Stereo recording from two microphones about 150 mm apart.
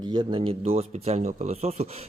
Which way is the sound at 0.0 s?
30° right (ahead or behind).